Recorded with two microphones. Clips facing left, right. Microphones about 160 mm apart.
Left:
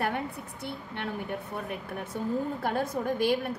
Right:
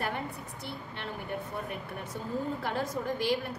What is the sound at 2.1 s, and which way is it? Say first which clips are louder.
A woman's voice: left 4 dB; 55° left (ahead or behind).